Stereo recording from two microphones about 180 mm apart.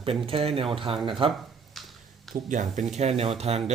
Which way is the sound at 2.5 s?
45° right (ahead or behind).